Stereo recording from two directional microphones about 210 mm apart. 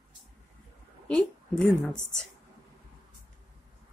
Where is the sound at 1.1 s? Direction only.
5° left (ahead or behind).